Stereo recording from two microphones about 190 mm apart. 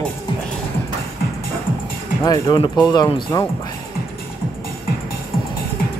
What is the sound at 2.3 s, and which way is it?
Speech, 25° left (ahead or behind).